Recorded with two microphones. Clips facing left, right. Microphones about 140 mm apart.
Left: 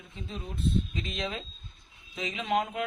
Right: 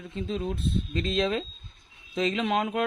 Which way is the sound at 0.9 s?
65° right (ahead or behind).